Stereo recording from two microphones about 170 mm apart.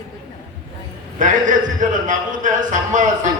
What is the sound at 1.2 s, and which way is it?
A man's voice, 50° right (ahead or behind).